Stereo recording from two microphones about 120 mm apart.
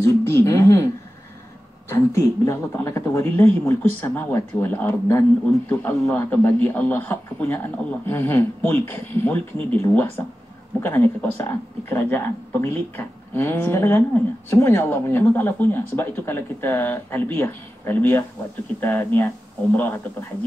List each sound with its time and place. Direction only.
0.0 s speech: 25° left (ahead or behind)
1.9 s speech: 25° left (ahead or behind)